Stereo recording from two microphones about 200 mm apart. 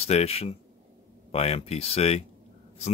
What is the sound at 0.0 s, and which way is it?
Speech, 30° left (ahead or behind).